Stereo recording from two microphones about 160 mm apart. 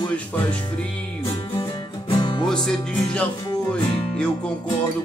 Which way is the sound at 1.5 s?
30° left (ahead or behind).